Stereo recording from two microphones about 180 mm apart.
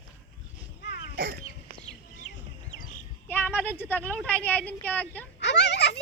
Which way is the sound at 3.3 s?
10° left (ahead or behind).